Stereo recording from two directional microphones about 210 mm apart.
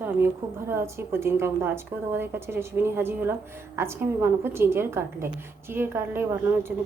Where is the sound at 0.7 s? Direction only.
10° right (ahead or behind).